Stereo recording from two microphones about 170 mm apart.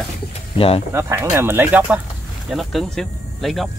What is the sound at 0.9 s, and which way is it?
Speech, 15° right (ahead or behind).